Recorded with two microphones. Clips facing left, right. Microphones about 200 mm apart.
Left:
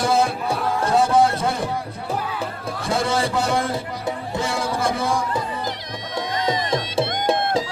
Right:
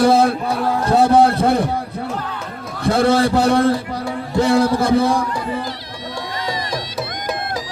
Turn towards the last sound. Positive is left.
turn(degrees=25)  # may be behind; listen again after turning